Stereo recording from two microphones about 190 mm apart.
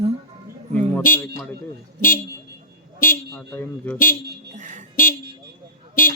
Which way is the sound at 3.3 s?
10° left (ahead or behind).